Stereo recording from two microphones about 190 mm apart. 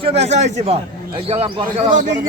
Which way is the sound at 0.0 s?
35° right (ahead or behind).